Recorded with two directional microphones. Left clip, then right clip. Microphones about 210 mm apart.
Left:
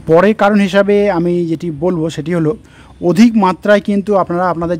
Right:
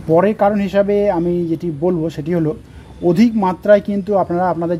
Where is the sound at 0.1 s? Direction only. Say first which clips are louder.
Left 4 dB; 35° left (ahead or behind).